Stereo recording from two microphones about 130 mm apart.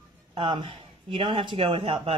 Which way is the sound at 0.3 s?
40° right (ahead or behind).